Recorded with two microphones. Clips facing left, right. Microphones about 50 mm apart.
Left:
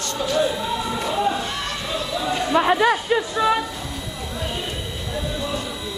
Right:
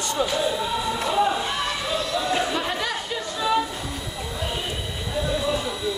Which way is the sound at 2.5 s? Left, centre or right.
Left.